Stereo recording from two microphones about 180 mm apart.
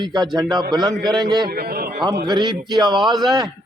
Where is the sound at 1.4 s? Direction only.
60° right (ahead or behind).